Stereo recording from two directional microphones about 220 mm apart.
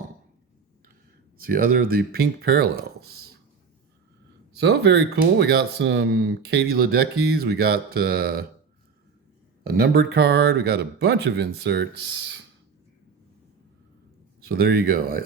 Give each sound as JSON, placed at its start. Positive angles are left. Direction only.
{"t": 1.4, "sound": "speech", "side_deg": -40}
{"t": 4.6, "sound": "speech", "side_deg": -50}
{"t": 9.6, "sound": "speech", "side_deg": -45}
{"t": 14.4, "sound": "speech", "side_deg": -45}